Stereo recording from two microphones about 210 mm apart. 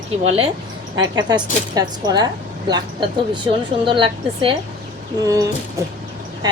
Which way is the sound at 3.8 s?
25° right (ahead or behind).